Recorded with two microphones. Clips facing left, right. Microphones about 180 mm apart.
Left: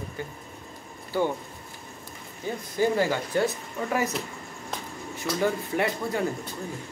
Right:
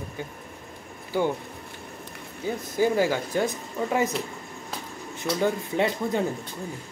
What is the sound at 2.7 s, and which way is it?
Speech, 10° right (ahead or behind).